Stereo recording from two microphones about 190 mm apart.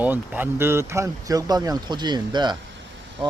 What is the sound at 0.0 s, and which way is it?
Speech, 10° right (ahead or behind).